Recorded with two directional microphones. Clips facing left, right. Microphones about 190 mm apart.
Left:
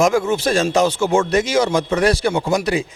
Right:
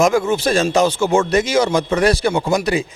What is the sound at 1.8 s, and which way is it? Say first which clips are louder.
Speech: right 1 dB; 15° right (ahead or behind).